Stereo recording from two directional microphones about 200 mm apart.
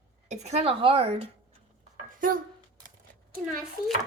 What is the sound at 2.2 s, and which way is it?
Speech, 45° right (ahead or behind).